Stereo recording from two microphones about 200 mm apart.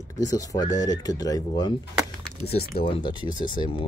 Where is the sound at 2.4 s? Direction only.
30° left (ahead or behind).